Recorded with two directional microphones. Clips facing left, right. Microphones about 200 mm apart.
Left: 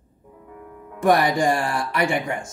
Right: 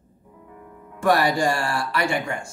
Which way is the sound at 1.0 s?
20° left (ahead or behind).